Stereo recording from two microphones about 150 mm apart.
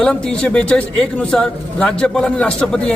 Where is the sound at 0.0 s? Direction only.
5° left (ahead or behind).